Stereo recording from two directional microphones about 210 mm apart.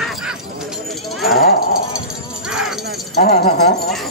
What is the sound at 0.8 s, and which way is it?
Speech, centre (ahead or behind).